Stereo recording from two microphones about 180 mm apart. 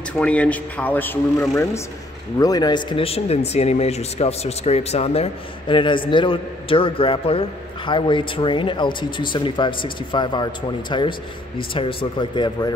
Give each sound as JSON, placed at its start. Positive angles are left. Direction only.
{"t": 0.2, "sound": "speech", "side_deg": 5}